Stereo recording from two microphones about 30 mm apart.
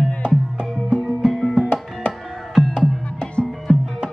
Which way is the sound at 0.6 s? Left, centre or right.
Right.